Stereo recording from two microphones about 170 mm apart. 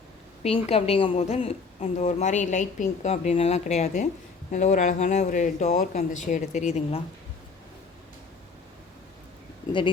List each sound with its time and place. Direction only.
0.4 s a woman's voice: 35° left (ahead or behind)